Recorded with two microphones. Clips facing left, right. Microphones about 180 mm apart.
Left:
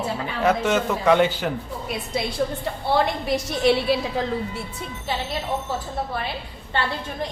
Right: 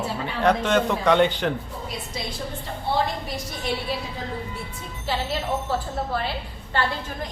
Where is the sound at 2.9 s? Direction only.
80° left.